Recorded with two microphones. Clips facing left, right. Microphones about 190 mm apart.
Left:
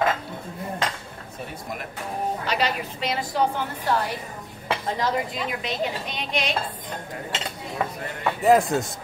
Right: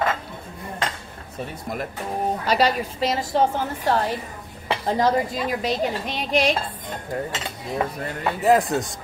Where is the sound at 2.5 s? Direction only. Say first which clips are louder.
Right 8 dB; 40° right (ahead or behind).